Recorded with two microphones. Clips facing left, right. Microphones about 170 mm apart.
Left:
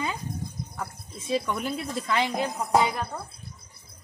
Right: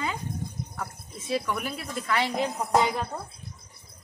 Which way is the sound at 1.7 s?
20° left (ahead or behind).